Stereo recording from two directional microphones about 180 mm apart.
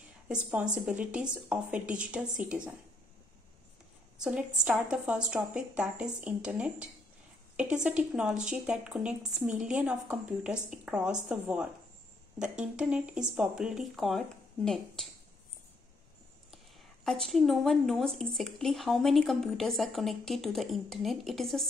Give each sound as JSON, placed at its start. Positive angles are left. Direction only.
{"t": 0.3, "sound": "a woman's voice", "side_deg": -5}
{"t": 4.2, "sound": "a woman's voice", "side_deg": -5}
{"t": 17.0, "sound": "speech", "side_deg": 0}